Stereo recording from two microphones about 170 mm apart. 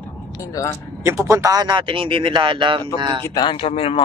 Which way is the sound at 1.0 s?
15° right (ahead or behind).